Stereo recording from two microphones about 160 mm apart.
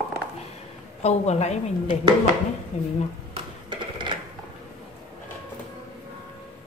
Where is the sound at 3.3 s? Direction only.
30° right (ahead or behind).